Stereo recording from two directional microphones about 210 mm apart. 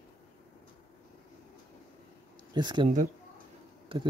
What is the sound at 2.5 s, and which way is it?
Speech, 20° right (ahead or behind).